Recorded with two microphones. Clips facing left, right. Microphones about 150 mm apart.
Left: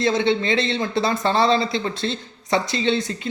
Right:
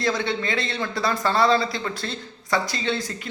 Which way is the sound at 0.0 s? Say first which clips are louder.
Left 5 dB; 25° left (ahead or behind).